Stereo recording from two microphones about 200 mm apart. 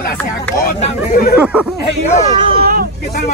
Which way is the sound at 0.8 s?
45° left (ahead or behind).